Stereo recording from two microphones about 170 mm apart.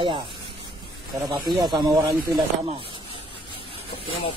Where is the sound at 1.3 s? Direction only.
25° right (ahead or behind).